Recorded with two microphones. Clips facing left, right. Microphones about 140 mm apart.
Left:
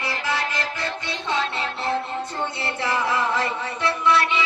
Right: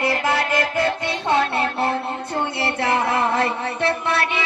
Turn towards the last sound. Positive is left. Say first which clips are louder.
# left 1 dB
turn(degrees=-60)  # may be behind; listen again after turning